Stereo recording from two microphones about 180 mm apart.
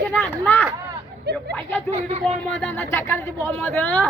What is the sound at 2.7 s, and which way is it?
Speech, 15° left (ahead or behind).